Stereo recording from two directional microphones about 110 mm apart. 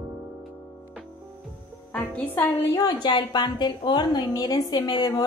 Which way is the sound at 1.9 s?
10° left (ahead or behind).